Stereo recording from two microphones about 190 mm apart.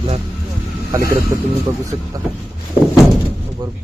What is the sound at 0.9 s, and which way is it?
Speech, 15° right (ahead or behind).